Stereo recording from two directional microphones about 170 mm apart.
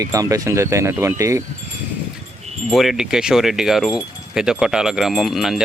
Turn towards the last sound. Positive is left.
turn(degrees=0)  # may be behind; listen again after turning